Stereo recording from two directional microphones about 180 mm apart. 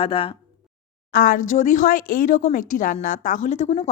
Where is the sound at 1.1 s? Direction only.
50° left (ahead or behind).